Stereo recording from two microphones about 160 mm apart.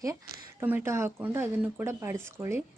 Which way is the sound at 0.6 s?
10° right (ahead or behind).